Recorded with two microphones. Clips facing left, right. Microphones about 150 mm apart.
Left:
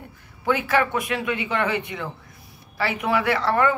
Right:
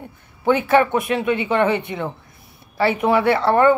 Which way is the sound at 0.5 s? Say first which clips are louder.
Right 6 dB; 25° right (ahead or behind).